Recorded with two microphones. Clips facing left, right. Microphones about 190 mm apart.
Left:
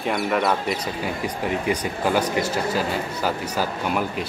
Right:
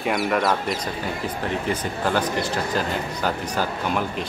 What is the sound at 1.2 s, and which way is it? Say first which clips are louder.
Speech: left 2 dB; 10° left (ahead or behind).